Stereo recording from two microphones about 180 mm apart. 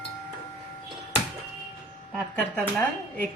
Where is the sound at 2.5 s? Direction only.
5° left (ahead or behind).